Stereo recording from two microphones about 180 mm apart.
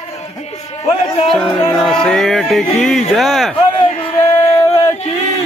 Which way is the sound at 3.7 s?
30° left (ahead or behind).